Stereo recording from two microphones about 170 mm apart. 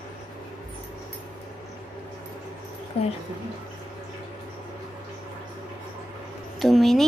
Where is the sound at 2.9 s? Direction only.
35° left (ahead or behind).